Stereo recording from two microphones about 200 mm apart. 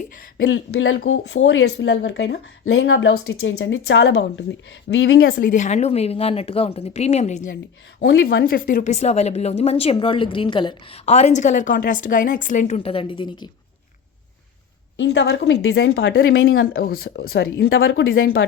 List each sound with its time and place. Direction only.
0.3 s speech: 75° left (ahead or behind)
5.3 s speech: 45° left (ahead or behind)
8.4 s speech: 50° left (ahead or behind); by 13.5 s 20° left (ahead or behind)
14.9 s speech: 60° left (ahead or behind); by 16.6 s 80° left
16.7 s speech: 50° left (ahead or behind)
17.7 s speech: 80° left